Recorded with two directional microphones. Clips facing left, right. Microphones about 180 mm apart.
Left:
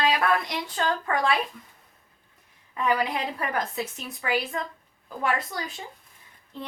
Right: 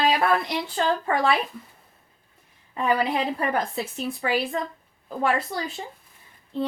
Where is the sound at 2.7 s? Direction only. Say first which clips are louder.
Right 3 dB; 30° right (ahead or behind).